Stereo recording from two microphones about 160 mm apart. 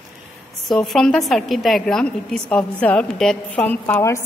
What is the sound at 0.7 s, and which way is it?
A woman's voice, 5° left (ahead or behind).